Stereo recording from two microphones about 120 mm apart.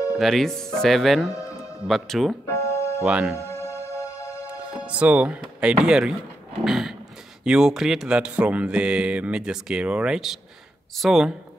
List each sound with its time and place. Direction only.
0.2 s speech: centre (ahead or behind)
2.4 s music: 25° left (ahead or behind)
3.0 s speech: 5° right (ahead or behind)
3.3 s music: 25° left (ahead or behind)
4.8 s speech: 10° right (ahead or behind)